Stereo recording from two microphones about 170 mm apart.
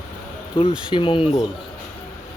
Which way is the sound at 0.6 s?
35° left (ahead or behind).